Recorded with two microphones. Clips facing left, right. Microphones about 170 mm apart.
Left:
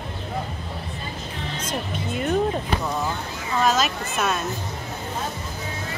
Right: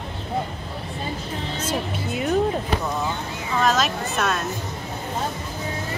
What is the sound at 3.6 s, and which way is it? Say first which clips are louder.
Speech: even; centre (ahead or behind).